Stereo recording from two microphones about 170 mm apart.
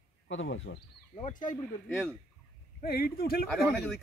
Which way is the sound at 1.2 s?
50° left (ahead or behind).